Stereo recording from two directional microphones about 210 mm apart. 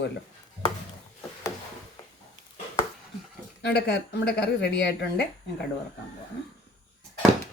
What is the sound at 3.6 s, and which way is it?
Speech, 50° left (ahead or behind).